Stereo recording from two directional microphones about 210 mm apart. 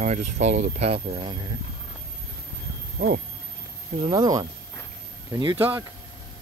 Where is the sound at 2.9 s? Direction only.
45° right (ahead or behind).